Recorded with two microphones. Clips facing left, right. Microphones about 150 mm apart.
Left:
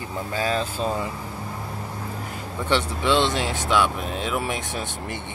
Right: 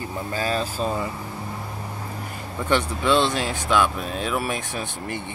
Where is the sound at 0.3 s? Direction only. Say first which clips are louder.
Left 1 dB; 20° left (ahead or behind).